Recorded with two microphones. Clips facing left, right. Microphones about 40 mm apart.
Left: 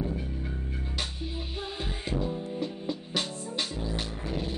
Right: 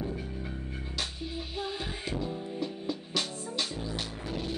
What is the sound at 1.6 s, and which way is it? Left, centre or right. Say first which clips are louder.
Music: right 1 dB; centre.